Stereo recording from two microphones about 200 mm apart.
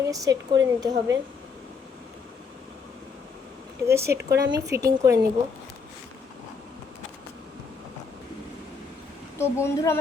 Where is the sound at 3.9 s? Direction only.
15° right (ahead or behind).